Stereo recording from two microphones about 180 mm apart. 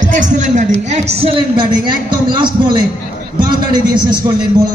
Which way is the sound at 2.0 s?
25° right (ahead or behind).